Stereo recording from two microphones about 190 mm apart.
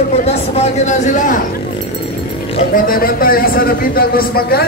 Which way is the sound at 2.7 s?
50° left (ahead or behind).